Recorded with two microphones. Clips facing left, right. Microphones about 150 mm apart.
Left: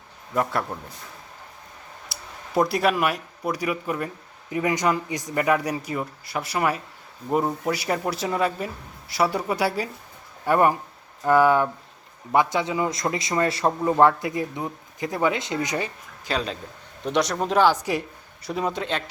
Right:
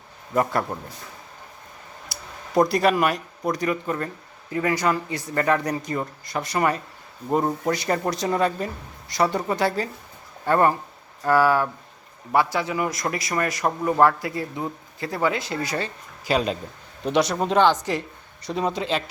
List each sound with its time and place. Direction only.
0.7 s speech: centre (ahead or behind)
2.1 s a sound: centre (ahead or behind)
2.6 s a man's voice: 5° left (ahead or behind); by 15.9 s 20° left (ahead or behind)
16.2 s a man's voice: 10° right (ahead or behind)
17.0 s speech: centre (ahead or behind)